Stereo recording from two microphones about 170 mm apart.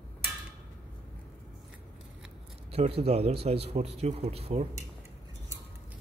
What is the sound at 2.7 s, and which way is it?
A man's voice, 35° right (ahead or behind).